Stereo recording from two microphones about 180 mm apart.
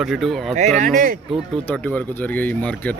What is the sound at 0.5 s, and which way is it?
Speech, 45° right (ahead or behind).